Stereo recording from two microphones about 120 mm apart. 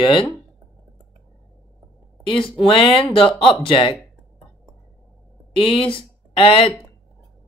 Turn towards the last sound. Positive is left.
turn(degrees=45)  # may be behind; listen again after turning